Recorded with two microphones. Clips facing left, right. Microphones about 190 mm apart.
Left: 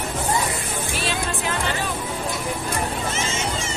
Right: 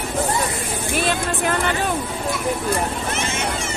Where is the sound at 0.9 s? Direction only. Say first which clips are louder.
Right 6 dB; 55° right (ahead or behind).